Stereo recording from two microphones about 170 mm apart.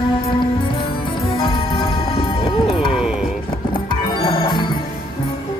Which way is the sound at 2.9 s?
5° right (ahead or behind).